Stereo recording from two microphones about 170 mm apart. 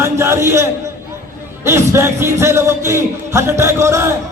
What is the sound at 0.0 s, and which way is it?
Speech, 15° right (ahead or behind).